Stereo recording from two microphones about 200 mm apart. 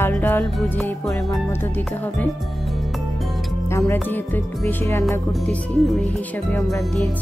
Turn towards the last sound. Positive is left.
turn(degrees=0)  # may be behind; listen again after turning